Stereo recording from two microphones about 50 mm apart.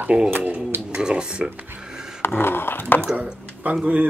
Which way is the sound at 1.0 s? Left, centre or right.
Centre.